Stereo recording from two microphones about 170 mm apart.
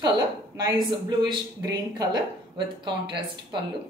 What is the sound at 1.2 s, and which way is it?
Speech, 25° right (ahead or behind).